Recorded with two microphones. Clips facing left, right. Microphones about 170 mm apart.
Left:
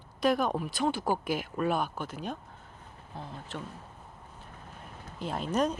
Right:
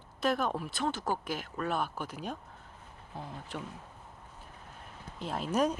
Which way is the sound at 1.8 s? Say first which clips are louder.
Left 2 dB; 5° right (ahead or behind).